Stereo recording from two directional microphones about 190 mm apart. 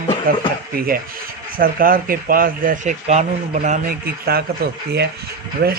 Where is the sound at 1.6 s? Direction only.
50° right (ahead or behind).